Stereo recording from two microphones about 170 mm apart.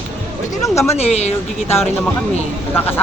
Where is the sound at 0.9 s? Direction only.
40° left (ahead or behind).